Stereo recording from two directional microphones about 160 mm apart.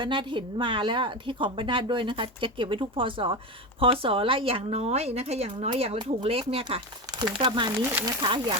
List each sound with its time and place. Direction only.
0.0 s a woman's voice: 30° right (ahead or behind)